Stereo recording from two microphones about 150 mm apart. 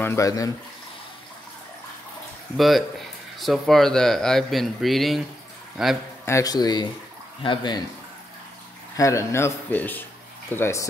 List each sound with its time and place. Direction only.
0.0 s speech: 20° left (ahead or behind)
2.5 s speech: centre (ahead or behind)
6.2 s speech: 20° left (ahead or behind)
8.9 s speech: 20° left (ahead or behind)